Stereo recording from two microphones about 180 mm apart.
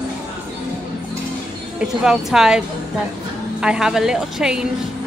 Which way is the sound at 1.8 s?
5° right (ahead or behind).